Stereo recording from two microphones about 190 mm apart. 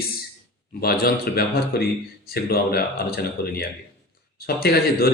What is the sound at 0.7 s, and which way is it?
A man's voice, 50° left (ahead or behind).